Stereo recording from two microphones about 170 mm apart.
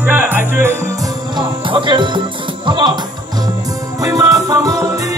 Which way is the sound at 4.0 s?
20° right (ahead or behind).